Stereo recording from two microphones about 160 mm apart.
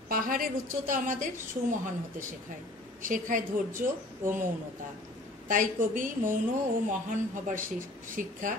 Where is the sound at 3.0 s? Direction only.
55° right (ahead or behind).